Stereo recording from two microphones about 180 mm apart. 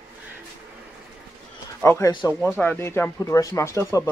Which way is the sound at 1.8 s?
15° left (ahead or behind).